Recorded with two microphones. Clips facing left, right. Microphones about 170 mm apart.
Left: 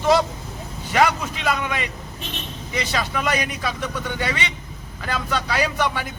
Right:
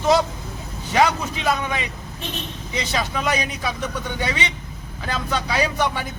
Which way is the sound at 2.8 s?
20° right (ahead or behind).